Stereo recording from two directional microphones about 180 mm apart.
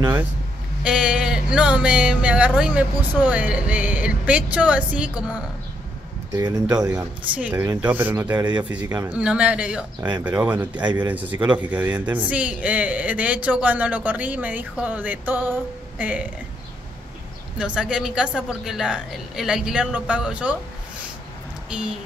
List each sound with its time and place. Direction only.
0.0 s speech: 10° right (ahead or behind)
7.0 s speech: 5° right (ahead or behind)
7.5 s speech: 20° right (ahead or behind)
7.8 s speech: 10° right (ahead or behind)
8.4 s speech: 25° right (ahead or behind)
9.1 s speech: 5° right (ahead or behind)
17.6 s a woman's voice: 5° right (ahead or behind)
21.6 s a sound: 5° right (ahead or behind)